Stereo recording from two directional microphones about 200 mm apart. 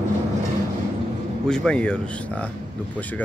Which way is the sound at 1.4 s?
5° left (ahead or behind).